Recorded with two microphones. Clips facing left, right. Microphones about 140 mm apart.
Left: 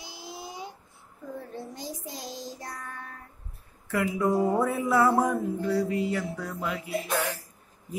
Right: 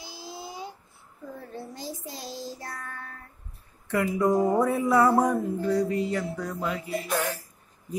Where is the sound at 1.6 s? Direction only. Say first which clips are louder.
Even; 20° left (ahead or behind).